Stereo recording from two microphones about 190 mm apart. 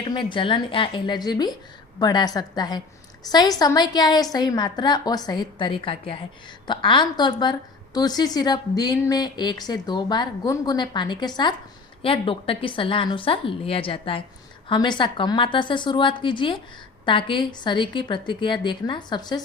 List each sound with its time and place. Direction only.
0.0 s speech: 25° left (ahead or behind)